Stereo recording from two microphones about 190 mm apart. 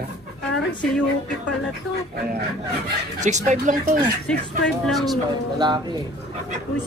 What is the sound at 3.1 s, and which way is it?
Speech, 40° right (ahead or behind).